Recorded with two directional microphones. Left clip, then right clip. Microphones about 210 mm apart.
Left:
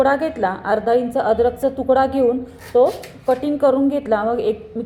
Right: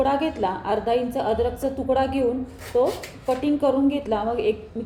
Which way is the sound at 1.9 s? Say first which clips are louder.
Left 6 dB; 15° right (ahead or behind).